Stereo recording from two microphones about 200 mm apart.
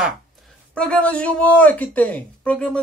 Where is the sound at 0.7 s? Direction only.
5° left (ahead or behind).